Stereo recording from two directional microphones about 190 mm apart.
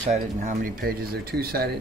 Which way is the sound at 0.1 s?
45° right (ahead or behind).